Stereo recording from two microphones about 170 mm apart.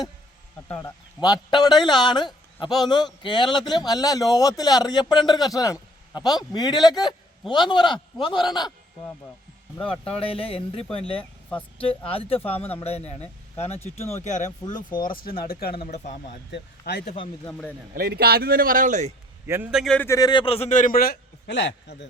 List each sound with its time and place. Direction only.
0.8 s a man's voice: 20° left (ahead or behind)
12.4 s speech: 10° left (ahead or behind)
12.8 s speech: 40° left (ahead or behind)
14.9 s speech: 55° left (ahead or behind)
15.7 s speech: 40° left (ahead or behind)
16.5 s speech: 75° left (ahead or behind)
17.4 s speech: 10° left (ahead or behind)
17.9 s speech: 70° right (ahead or behind); by 19.1 s 45° right (ahead or behind)
19.5 s a man's voice: 15° right (ahead or behind)
19.7 s speech: centre (ahead or behind)
20.0 s a man's voice: 20° left (ahead or behind); by 21.9 s 90° left